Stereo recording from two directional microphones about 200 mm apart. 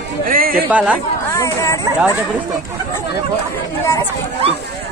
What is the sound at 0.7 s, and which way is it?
Speech, 5° right (ahead or behind).